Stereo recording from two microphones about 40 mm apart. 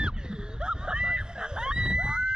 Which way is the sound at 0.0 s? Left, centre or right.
Right.